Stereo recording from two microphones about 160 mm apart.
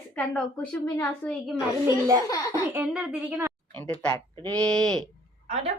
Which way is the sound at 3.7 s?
10° left (ahead or behind).